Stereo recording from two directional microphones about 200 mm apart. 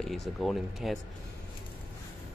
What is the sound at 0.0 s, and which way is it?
Speech, centre (ahead or behind).